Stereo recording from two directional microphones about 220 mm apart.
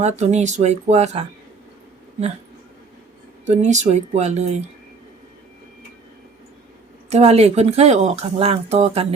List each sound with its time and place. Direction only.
0.0 s speech: 30° right (ahead or behind)
3.4 s speech: 30° right (ahead or behind)
7.1 s speech: 30° right (ahead or behind)